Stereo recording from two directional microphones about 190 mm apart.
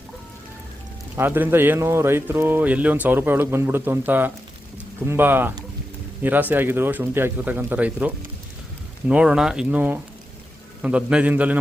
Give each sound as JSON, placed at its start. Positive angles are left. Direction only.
{"t": 1.1, "sound": "speech", "side_deg": -10}